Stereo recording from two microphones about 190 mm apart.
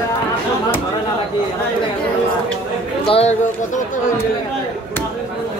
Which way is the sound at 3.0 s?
30° left (ahead or behind).